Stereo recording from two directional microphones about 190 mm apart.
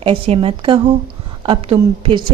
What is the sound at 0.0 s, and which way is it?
A woman's voice, 30° right (ahead or behind).